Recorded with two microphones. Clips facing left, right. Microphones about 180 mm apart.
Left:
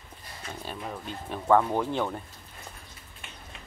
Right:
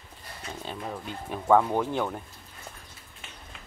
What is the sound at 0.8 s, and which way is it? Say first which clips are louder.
Speech: right 1 dB; 5° right (ahead or behind).